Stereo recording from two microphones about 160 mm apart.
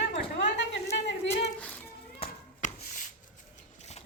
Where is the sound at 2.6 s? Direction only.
50° left (ahead or behind).